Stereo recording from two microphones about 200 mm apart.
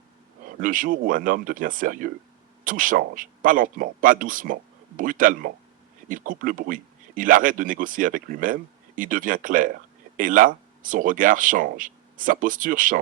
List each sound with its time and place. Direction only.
0.4 s speech: 40° right (ahead or behind)